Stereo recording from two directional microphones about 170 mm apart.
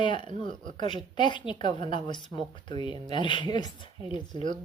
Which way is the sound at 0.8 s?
30° left (ahead or behind).